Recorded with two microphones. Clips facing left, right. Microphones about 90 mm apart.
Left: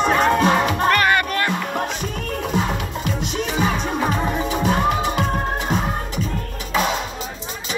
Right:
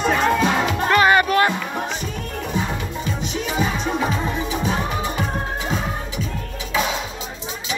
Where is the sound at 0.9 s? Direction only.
20° right (ahead or behind).